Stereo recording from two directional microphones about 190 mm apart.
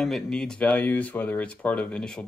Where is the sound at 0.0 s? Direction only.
Centre (ahead or behind).